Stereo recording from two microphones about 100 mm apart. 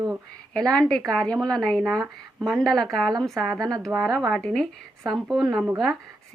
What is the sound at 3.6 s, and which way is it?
Speech, 40° right (ahead or behind).